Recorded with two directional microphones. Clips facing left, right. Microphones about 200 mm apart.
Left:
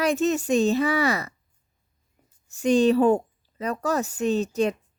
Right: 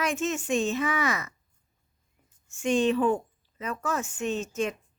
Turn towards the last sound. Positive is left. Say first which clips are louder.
# left 6 dB
turn(degrees=35)  # may be behind; listen again after turning